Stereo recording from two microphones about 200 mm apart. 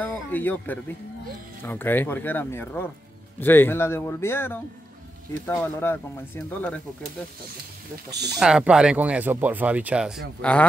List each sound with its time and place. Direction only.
0.0 s speech: 10° left (ahead or behind)
8.1 s speech: 55° right (ahead or behind)
8.4 s speech: 5° right (ahead or behind)